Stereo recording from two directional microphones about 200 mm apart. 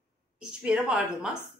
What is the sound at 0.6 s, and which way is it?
Speech, 5° right (ahead or behind).